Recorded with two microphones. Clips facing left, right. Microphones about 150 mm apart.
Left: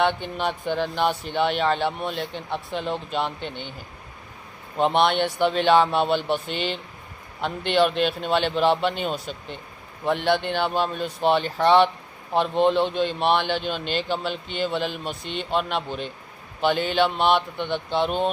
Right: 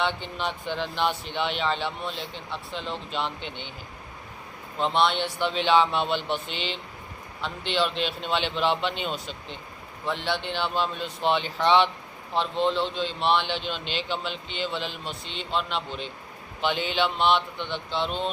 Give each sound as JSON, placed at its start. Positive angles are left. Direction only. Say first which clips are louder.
{"t": 0.0, "sound": "a man's voice", "louder": "left 5 dB", "side_deg": 55}
{"t": 4.9, "sound": "a man's voice", "louder": "left 2 dB", "side_deg": 55}